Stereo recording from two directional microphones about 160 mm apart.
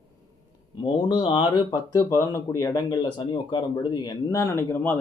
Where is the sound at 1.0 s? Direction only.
30° left (ahead or behind).